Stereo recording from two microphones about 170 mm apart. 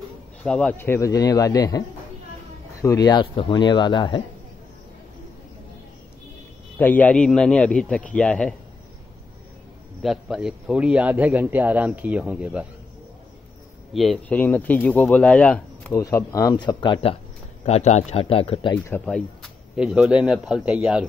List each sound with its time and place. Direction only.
0.4 s a man's voice: 5° left (ahead or behind); by 4.2 s 25° left (ahead or behind)
6.8 s a man's voice: 10° left (ahead or behind)
10.0 s a man's voice: 5° right (ahead or behind)
13.9 s a man's voice: centre (ahead or behind)
15.9 s a man's voice: 20° left (ahead or behind)
18.9 s speech: 5° left (ahead or behind)